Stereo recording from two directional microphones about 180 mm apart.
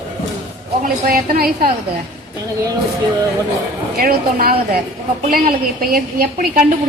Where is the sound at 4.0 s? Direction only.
55° right (ahead or behind).